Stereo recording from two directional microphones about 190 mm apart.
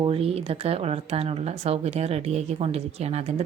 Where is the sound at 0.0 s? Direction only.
30° right (ahead or behind).